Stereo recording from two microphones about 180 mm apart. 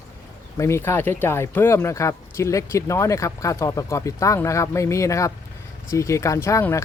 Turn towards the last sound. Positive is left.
turn(degrees=15)  # may be behind; listen again after turning